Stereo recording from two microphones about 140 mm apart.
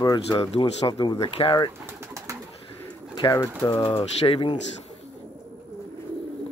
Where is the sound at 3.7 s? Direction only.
40° left (ahead or behind).